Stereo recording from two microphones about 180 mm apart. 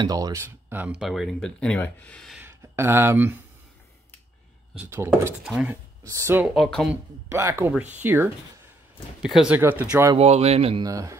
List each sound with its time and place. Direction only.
0.0 s speech: 20° right (ahead or behind); by 2.3 s 5° left (ahead or behind)
2.3 s speech: 15° right (ahead or behind)
4.7 s speech: 15° right (ahead or behind)
5.4 s speech: 5° right (ahead or behind)
6.0 s speech: 15° right (ahead or behind)
6.4 s speech: centre (ahead or behind)
7.2 s speech: 15° right (ahead or behind)
10.1 s speech: 35° right (ahead or behind)
10.8 s speech: 20° right (ahead or behind)